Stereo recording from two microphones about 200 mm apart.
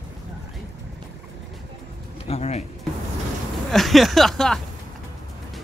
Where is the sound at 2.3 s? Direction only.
35° left (ahead or behind).